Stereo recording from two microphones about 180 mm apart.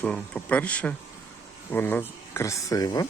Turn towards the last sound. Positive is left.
turn(degrees=20)  # may be behind; listen again after turning